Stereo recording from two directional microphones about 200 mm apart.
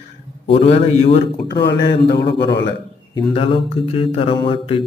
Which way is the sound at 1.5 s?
55° left (ahead or behind).